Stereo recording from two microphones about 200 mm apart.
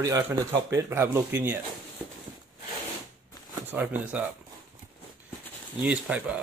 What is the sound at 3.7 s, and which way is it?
Speech, 5° right (ahead or behind).